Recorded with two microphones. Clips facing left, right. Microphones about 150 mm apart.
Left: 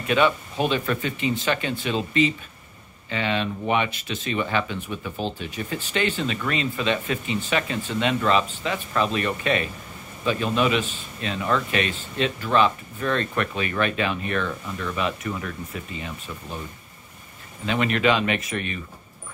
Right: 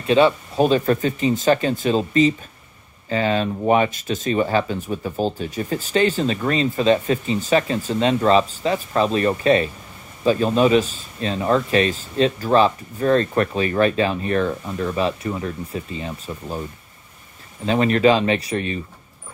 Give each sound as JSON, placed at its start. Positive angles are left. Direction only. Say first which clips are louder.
{"t": 0.0, "sound": "speech", "louder": "right 5 dB", "side_deg": -30}
{"t": 17.6, "sound": "speech", "louder": "right 6 dB", "side_deg": -35}